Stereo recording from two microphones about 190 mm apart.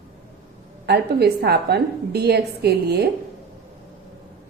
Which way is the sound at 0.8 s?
60° right (ahead or behind).